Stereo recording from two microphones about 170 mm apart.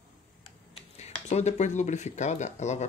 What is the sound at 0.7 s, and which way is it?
Speech, 35° left (ahead or behind).